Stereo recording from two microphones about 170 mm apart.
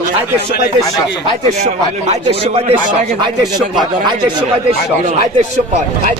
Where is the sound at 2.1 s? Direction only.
35° right (ahead or behind).